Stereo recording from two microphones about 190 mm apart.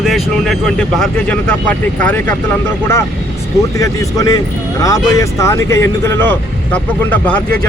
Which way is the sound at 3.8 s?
15° left (ahead or behind).